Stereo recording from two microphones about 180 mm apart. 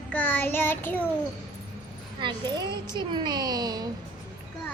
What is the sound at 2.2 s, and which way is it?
A woman's voice, 25° right (ahead or behind).